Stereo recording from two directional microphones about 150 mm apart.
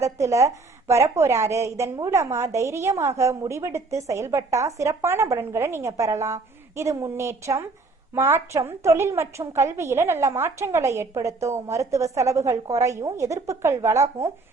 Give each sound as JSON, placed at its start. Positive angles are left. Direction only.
{"t": 0.0, "sound": "a woman's voice", "side_deg": -20}